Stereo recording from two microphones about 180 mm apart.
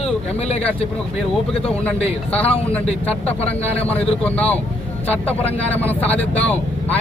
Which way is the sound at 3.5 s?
10° left (ahead or behind).